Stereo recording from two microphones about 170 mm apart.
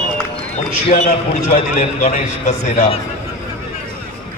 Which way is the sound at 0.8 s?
45° left (ahead or behind).